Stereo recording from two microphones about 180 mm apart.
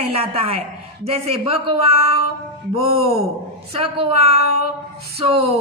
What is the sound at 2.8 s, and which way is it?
A woman's voice, 30° right (ahead or behind).